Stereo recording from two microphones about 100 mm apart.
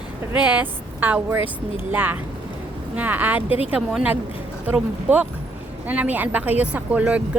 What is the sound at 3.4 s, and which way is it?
Speech, 75° left (ahead or behind).